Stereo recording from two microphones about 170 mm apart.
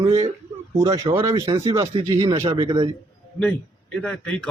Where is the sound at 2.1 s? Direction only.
30° right (ahead or behind).